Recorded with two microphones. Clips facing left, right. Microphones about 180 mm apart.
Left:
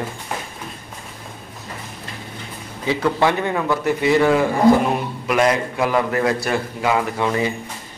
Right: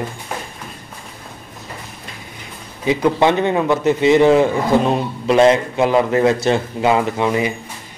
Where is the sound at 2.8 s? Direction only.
20° right (ahead or behind).